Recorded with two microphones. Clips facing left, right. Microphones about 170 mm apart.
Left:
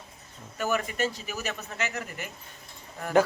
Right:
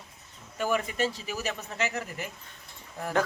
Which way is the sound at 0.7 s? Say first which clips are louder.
Even; 30° right (ahead or behind).